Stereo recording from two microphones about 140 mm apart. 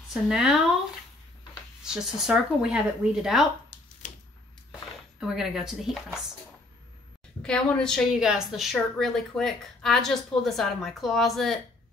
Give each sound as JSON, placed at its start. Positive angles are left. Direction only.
{"t": 0.1, "sound": "a woman's voice", "side_deg": -5}
{"t": 1.9, "sound": "a woman's voice", "side_deg": -5}
{"t": 4.0, "sound": "a sound", "side_deg": 65}
{"t": 5.2, "sound": "a woman's voice", "side_deg": -5}
{"t": 7.4, "sound": "a woman's voice", "side_deg": 5}